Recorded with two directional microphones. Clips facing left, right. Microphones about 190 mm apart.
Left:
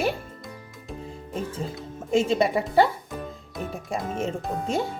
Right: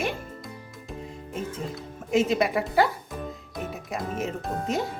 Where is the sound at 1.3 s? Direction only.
30° left (ahead or behind).